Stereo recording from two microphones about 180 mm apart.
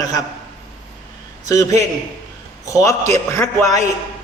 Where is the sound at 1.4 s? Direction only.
20° left (ahead or behind).